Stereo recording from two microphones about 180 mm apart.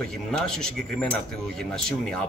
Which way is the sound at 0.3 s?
5° left (ahead or behind).